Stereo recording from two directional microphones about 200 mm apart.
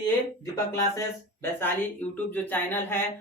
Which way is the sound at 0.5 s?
15° left (ahead or behind).